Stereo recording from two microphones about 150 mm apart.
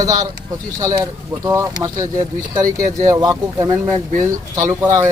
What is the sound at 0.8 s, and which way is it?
A man's voice, 25° right (ahead or behind).